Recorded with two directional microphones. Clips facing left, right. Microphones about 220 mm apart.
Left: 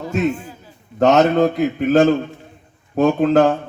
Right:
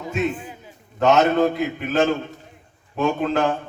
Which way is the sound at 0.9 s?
45° left (ahead or behind).